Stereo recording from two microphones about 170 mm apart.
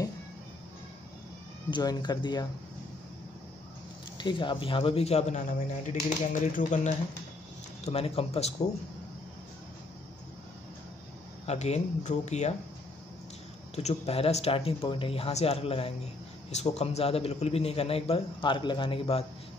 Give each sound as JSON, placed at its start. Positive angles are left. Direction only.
{"t": 1.7, "sound": "speech", "side_deg": 25}
{"t": 4.2, "sound": "a man's voice", "side_deg": 30}
{"t": 11.4, "sound": "a man's voice", "side_deg": 40}
{"t": 13.7, "sound": "a man's voice", "side_deg": 35}